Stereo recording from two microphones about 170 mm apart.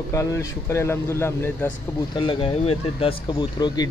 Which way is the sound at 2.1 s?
30° left (ahead or behind).